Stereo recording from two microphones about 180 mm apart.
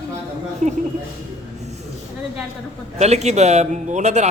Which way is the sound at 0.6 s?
40° right (ahead or behind).